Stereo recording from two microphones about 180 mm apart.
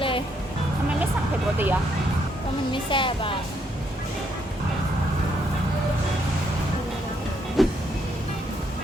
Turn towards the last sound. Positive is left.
turn(degrees=0)  # may be behind; listen again after turning